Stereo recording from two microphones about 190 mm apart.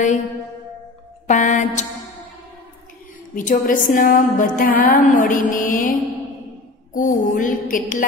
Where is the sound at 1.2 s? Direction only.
40° left (ahead or behind).